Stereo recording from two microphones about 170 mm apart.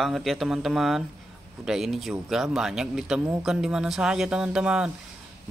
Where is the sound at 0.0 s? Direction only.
Centre (ahead or behind).